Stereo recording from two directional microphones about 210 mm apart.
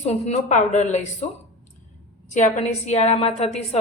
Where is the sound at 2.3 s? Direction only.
35° left (ahead or behind).